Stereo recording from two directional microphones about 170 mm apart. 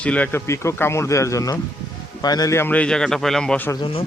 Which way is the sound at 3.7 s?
25° left (ahead or behind).